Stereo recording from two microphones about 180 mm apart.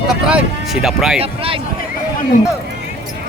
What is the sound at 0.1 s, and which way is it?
Speech, 5° right (ahead or behind).